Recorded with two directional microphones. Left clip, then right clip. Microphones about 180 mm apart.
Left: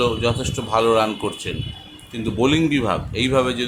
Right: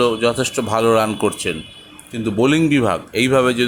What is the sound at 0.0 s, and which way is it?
Speech, 25° right (ahead or behind).